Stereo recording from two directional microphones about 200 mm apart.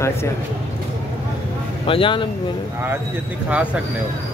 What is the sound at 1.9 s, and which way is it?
Speech, 25° left (ahead or behind).